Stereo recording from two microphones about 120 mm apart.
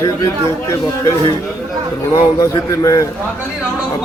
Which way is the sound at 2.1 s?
30° left (ahead or behind).